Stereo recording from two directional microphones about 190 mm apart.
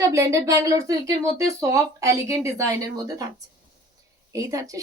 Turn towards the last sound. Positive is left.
turn(degrees=-15)  # may be behind; listen again after turning